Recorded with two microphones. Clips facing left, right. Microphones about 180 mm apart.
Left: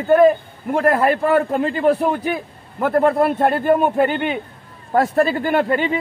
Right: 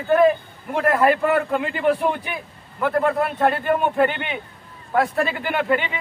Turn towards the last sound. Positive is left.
turn(degrees=40)  # may be behind; listen again after turning